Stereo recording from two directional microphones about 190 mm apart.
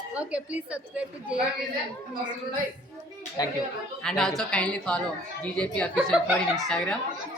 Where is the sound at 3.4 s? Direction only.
20° left (ahead or behind).